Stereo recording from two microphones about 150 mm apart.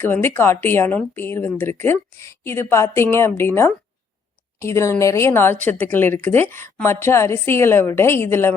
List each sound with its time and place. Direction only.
0.0 s speech: 15° left (ahead or behind)